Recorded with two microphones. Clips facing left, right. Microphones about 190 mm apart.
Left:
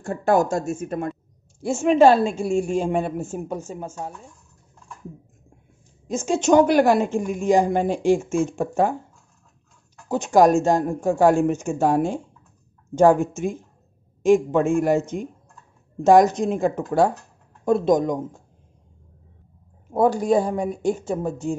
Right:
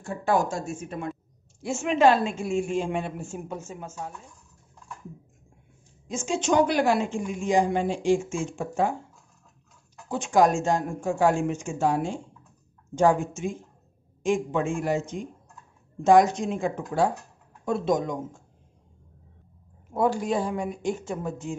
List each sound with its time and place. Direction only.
0.0 s speech: 45° left (ahead or behind)
1.6 s speech: 35° left (ahead or behind)
6.0 s speech: 45° left (ahead or behind)
10.0 s speech: 40° left (ahead or behind)
11.8 s speech: 50° left (ahead or behind)
13.2 s speech: 60° left (ahead or behind)
14.2 s speech: 40° left (ahead or behind)
19.9 s speech: 40° left (ahead or behind)